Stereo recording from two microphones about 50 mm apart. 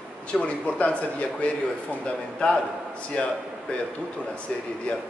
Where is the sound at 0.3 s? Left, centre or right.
Left.